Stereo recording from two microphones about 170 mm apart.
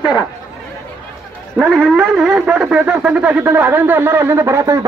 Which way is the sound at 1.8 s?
Centre (ahead or behind).